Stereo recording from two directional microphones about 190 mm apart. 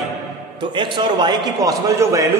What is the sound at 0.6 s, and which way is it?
A man's voice, 25° right (ahead or behind).